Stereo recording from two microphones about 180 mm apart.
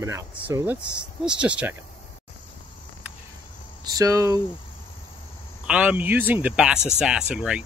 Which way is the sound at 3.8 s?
20° right (ahead or behind).